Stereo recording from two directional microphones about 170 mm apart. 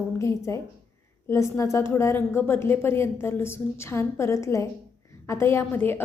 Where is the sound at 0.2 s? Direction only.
15° left (ahead or behind).